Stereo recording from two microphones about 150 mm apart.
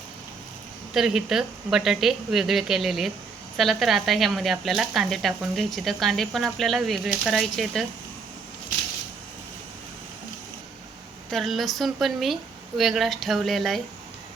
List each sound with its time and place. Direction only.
0.9 s speech: 5° right (ahead or behind)
11.3 s speech: centre (ahead or behind)